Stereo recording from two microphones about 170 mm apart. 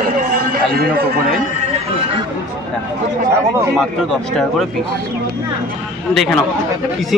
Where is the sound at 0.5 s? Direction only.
65° right (ahead or behind).